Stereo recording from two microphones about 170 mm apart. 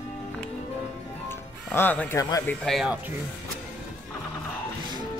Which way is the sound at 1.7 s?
10° left (ahead or behind).